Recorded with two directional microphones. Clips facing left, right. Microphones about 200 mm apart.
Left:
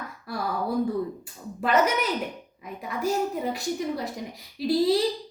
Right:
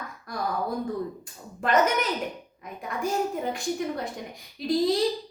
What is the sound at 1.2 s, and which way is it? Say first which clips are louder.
Speech: left 2 dB; 5° left (ahead or behind).